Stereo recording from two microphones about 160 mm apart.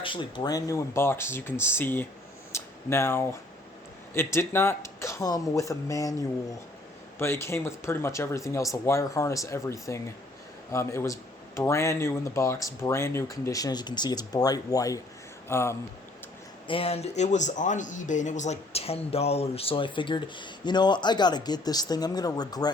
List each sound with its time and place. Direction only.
0.0 s speech: 30° left (ahead or behind); by 2.0 s 15° left (ahead or behind)
2.5 s a sound: 15° left (ahead or behind)
4.1 s speech: 15° left (ahead or behind)
7.2 s speech: 15° left (ahead or behind)
16.6 s speech: 35° left (ahead or behind)